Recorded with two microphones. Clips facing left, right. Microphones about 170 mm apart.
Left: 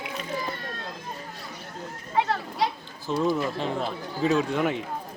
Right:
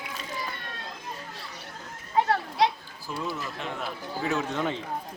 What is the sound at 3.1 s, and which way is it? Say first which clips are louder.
Speech: left 9 dB; 40° left (ahead or behind).